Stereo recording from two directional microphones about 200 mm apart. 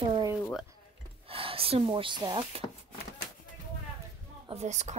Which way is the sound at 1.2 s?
30° right (ahead or behind).